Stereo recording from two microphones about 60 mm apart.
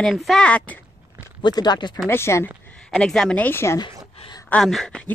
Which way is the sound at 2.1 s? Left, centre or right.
Left.